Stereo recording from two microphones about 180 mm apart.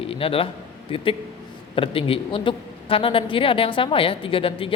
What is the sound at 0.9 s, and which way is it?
A man's voice, 30° left (ahead or behind).